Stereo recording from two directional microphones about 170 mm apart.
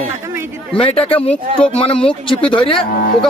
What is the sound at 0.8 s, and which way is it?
Speech, 35° left (ahead or behind).